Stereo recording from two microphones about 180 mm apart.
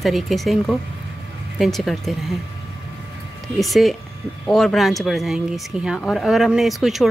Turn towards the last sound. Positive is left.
turn(degrees=0)  # may be behind; listen again after turning